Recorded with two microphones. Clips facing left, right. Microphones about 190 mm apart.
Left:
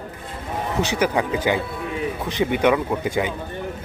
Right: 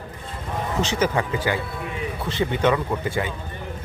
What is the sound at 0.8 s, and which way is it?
A man's voice, 15° left (ahead or behind).